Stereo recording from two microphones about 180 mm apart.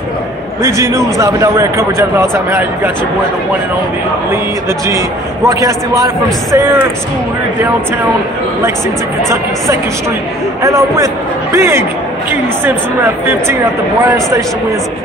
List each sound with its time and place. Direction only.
0.6 s a man's voice: 15° right (ahead or behind)
4.8 s a man's voice: 15° right (ahead or behind)
11.5 s a man's voice: 15° right (ahead or behind)